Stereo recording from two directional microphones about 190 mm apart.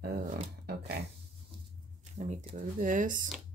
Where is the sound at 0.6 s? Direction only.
55° right (ahead or behind).